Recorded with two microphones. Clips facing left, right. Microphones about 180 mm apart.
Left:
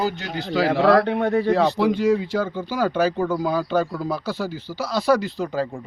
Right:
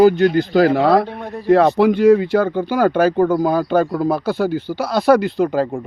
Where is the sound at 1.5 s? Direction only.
60° right (ahead or behind).